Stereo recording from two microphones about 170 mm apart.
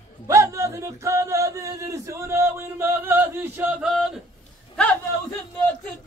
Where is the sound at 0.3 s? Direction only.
15° right (ahead or behind).